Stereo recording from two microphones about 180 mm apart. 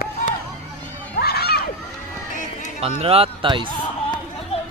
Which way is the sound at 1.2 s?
60° left (ahead or behind).